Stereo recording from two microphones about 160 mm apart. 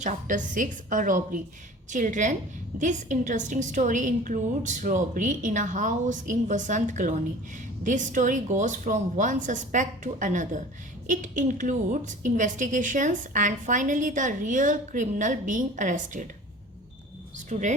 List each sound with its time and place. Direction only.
0.0 s a woman's voice: 50° right (ahead or behind)
17.3 s speech: 50° right (ahead or behind)